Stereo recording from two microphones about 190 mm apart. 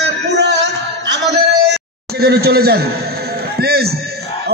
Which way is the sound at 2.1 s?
55° right (ahead or behind).